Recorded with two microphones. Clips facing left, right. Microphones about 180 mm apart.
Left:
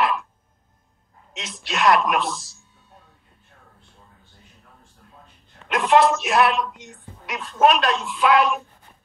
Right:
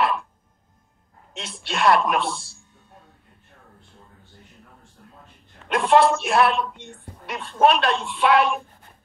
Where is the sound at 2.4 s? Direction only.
30° right (ahead or behind).